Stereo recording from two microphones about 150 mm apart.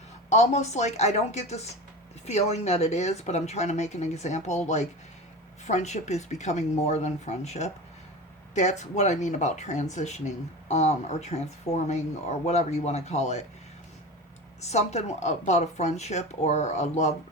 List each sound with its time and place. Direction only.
0.3 s speech: 50° left (ahead or behind)
14.6 s speech: 45° left (ahead or behind)